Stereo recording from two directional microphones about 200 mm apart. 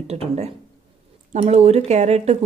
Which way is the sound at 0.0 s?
30° right (ahead or behind).